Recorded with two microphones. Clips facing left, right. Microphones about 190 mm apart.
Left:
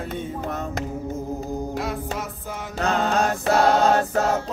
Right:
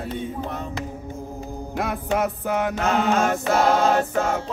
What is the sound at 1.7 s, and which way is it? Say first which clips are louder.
Music: right 3 dB; 60° right (ahead or behind).